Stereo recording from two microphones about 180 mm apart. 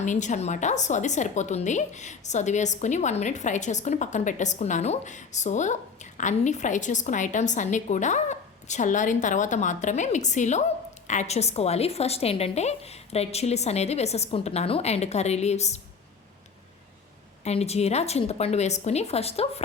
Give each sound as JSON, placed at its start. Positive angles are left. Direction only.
{"t": 0.0, "sound": "a woman's voice", "side_deg": 40}
{"t": 17.4, "sound": "a woman's voice", "side_deg": 35}